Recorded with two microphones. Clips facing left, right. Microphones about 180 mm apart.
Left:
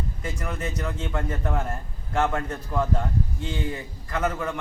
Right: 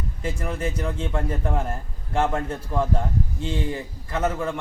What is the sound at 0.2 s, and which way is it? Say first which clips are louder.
A man's voice: right 7 dB; 30° right (ahead or behind).